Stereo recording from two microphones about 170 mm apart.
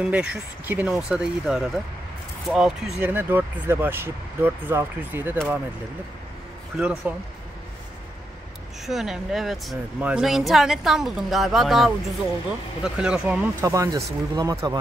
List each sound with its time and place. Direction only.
0.0 s speech: 5° right (ahead or behind)
6.8 s speech: 5° right (ahead or behind)
8.8 s speech: centre (ahead or behind)
13.7 s speech: 20° right (ahead or behind)